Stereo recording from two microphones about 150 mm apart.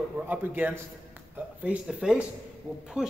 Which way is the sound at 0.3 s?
10° right (ahead or behind).